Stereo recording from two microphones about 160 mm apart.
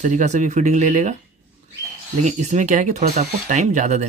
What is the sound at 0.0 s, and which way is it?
Speech, 50° right (ahead or behind).